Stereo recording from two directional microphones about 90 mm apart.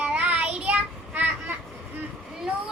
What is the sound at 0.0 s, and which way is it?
Child singing, 15° right (ahead or behind).